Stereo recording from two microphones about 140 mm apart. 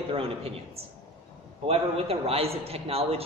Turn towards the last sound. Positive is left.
turn(degrees=-45)  # may be behind; listen again after turning